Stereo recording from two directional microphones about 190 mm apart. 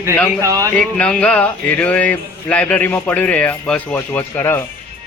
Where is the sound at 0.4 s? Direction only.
15° right (ahead or behind).